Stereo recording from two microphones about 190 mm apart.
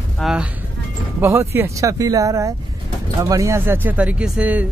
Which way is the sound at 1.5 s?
15° right (ahead or behind).